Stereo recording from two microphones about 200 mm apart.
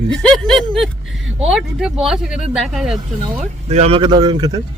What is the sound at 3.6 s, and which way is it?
Speech, 30° right (ahead or behind).